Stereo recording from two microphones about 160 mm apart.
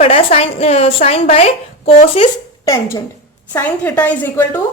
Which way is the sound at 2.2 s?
25° left (ahead or behind).